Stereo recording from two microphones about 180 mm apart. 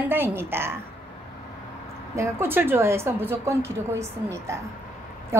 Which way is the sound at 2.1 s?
15° right (ahead or behind).